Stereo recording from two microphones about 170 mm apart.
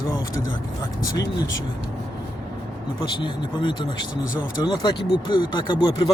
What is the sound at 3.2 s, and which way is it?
Speech, 25° left (ahead or behind).